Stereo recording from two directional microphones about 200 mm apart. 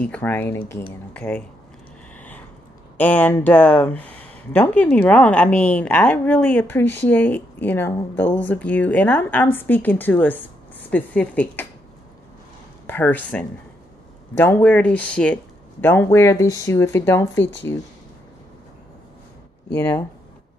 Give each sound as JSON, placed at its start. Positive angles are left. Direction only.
{"t": 0.0, "sound": "speech", "side_deg": 10}
{"t": 2.1, "sound": "a sound", "side_deg": 5}
{"t": 3.0, "sound": "speech", "side_deg": 10}
{"t": 12.8, "sound": "speech", "side_deg": 10}
{"t": 19.7, "sound": "speech", "side_deg": 10}